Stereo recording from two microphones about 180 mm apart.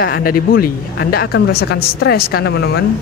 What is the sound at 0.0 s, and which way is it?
Speech, 55° left (ahead or behind).